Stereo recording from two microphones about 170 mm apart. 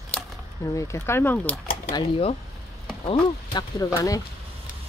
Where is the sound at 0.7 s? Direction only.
15° left (ahead or behind).